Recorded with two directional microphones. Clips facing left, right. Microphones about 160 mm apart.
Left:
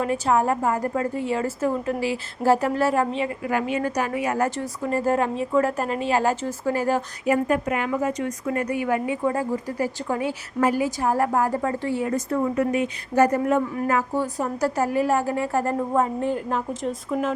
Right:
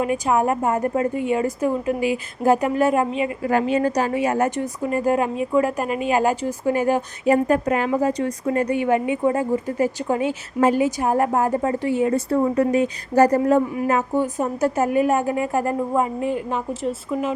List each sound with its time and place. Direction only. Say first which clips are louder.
0.0 s a woman's voice: right 2 dB; 15° right (ahead or behind)
3.4 s a woman's voice: right 7 dB; 35° right (ahead or behind); by 7.0 s 15° right (ahead or behind)
7.3 s a woman's voice: right 4 dB; 35° right (ahead or behind); by 12.1 s 15° right (ahead or behind)
12.1 s speech: right 4 dB; 30° right (ahead or behind)
13.8 s a woman's voice: right 3 dB; 20° right (ahead or behind)
15.9 s a woman's voice: right 1 dB; 5° right (ahead or behind)